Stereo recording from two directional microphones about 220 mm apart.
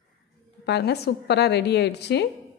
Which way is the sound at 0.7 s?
50° left (ahead or behind).